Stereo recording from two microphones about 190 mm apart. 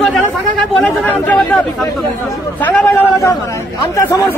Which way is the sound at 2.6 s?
10° left (ahead or behind).